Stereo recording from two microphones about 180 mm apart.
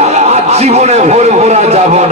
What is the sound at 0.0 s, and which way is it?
A man's voice, 40° right (ahead or behind).